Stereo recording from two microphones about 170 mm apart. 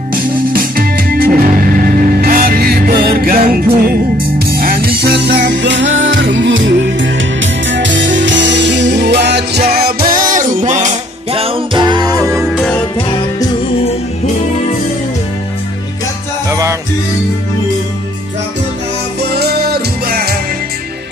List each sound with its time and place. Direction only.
0.1 s music: 60° right (ahead or behind); by 8.8 s 90° right
8.9 s music: 80° right
9.7 s music: 65° right (ahead or behind)
10.2 s music: 50° right (ahead or behind); by 12.0 s 30° right (ahead or behind)
12.3 s music: centre (ahead or behind)
16.4 s music: 15° right (ahead or behind)
19.3 s music: 70° right (ahead or behind)